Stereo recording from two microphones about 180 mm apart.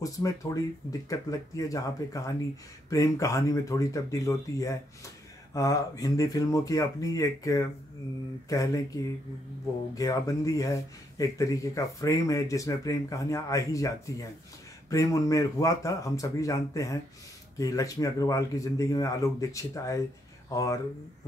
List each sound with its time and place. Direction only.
0.0 s speech: 20° left (ahead or behind)